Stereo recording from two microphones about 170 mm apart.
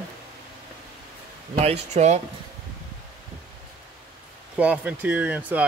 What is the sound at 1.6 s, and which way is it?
Speech, 40° right (ahead or behind).